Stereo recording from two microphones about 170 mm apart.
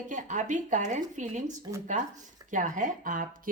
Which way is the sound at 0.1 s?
45° right (ahead or behind).